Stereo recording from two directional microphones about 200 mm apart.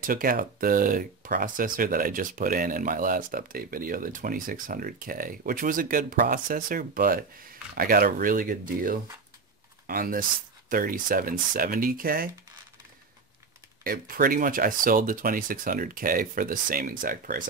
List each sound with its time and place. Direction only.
0.0 s speech: 45° right (ahead or behind)
13.8 s speech: 45° right (ahead or behind)